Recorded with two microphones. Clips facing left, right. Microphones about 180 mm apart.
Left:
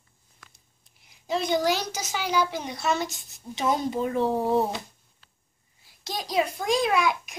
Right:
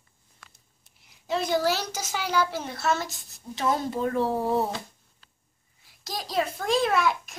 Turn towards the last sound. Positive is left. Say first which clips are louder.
# even
turn(degrees=15)  # may be behind; listen again after turning